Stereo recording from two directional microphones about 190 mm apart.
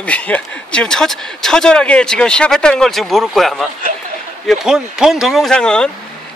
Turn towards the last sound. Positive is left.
turn(degrees=5)  # may be behind; listen again after turning